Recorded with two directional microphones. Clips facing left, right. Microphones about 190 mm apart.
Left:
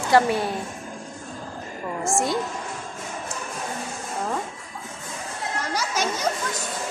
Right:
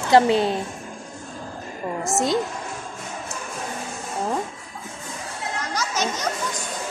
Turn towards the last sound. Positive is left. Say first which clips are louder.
# even
turn(degrees=10)  # may be behind; listen again after turning